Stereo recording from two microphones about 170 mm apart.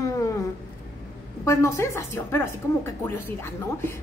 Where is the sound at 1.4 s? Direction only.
15° left (ahead or behind).